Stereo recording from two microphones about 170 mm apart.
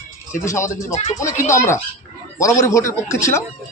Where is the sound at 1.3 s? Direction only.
45° left (ahead or behind).